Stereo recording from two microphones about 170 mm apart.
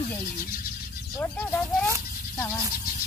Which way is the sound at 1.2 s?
5° left (ahead or behind).